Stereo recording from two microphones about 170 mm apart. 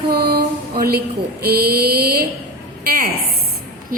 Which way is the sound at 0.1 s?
70° right (ahead or behind).